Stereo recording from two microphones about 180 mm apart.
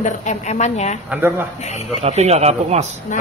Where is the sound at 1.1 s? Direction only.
10° right (ahead or behind).